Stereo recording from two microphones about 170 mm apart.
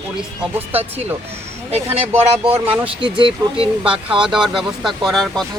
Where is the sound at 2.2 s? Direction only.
35° right (ahead or behind).